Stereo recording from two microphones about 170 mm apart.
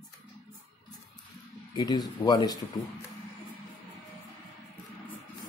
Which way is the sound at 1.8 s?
25° left (ahead or behind).